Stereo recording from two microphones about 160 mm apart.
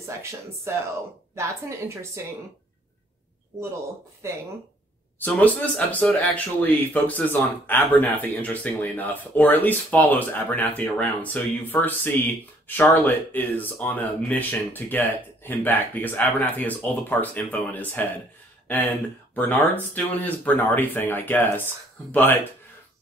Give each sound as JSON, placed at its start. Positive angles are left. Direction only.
{"t": 0.0, "sound": "a woman's voice", "side_deg": -15}
{"t": 4.2, "sound": "a woman's voice", "side_deg": -15}
{"t": 5.2, "sound": "speech", "side_deg": 10}
{"t": 19.3, "sound": "speech", "side_deg": 10}